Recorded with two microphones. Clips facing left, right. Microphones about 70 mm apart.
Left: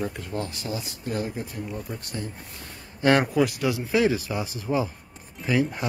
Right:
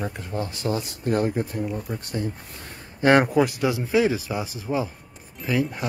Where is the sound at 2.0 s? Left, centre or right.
Right.